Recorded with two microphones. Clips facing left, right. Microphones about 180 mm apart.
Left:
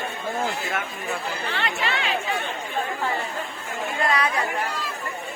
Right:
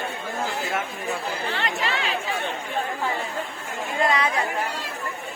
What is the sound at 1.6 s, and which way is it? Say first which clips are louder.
Speech: left 2 dB; 35° right (ahead or behind).